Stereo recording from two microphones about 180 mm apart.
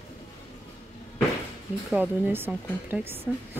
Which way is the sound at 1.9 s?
10° right (ahead or behind).